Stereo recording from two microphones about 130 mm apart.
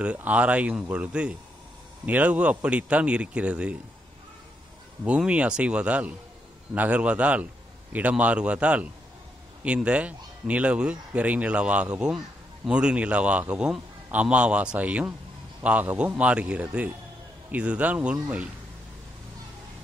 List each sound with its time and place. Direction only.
0.0 s a man's voice: 10° right (ahead or behind)
5.0 s a man's voice: 10° right (ahead or behind)